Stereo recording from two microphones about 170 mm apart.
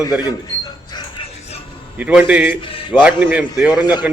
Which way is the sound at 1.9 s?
5° right (ahead or behind).